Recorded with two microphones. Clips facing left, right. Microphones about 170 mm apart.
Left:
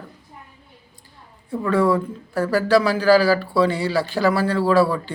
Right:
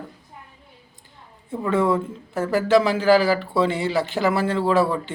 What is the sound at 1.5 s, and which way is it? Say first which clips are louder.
Speech: left 2 dB; 20° right (ahead or behind).